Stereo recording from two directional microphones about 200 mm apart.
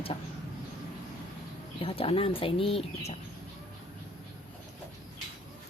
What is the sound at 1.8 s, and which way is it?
Speech, 30° left (ahead or behind).